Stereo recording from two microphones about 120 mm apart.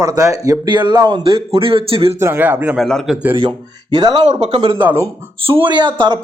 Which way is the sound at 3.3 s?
40° right (ahead or behind).